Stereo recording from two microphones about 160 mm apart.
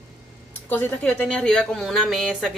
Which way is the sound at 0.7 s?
10° left (ahead or behind).